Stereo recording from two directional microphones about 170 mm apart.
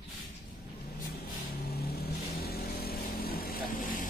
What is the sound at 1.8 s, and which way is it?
Vehicle, 65° left (ahead or behind).